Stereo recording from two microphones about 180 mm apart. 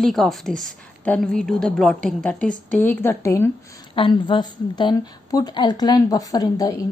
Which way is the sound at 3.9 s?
30° left (ahead or behind).